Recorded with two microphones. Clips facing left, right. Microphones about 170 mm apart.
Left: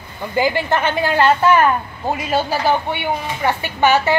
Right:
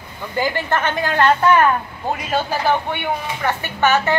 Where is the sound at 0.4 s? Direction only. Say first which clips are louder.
Left 3 dB; 10° left (ahead or behind).